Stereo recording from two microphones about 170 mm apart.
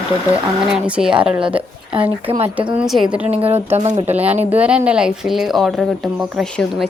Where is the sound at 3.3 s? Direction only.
35° right (ahead or behind).